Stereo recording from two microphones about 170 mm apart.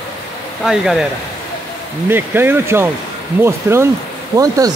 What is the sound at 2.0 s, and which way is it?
Speech, 10° right (ahead or behind).